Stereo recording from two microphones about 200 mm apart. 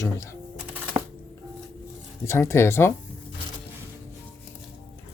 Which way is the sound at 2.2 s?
15° left (ahead or behind).